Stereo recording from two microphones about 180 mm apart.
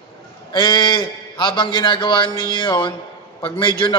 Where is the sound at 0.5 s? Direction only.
25° left (ahead or behind).